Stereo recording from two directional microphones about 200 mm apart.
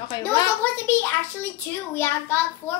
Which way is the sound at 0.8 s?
10° left (ahead or behind).